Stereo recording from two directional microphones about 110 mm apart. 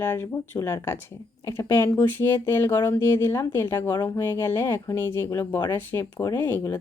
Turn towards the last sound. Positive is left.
turn(degrees=20)  # may be behind; listen again after turning